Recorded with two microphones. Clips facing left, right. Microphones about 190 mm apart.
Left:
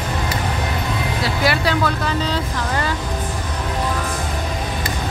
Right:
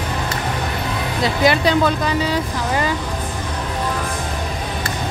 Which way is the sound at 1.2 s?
20° right (ahead or behind).